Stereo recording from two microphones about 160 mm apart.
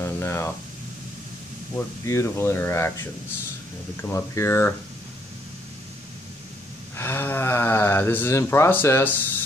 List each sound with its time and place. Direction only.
0.0 s a sound: 15° left (ahead or behind)
1.8 s speech: 15° left (ahead or behind)
7.0 s speech: 15° left (ahead or behind)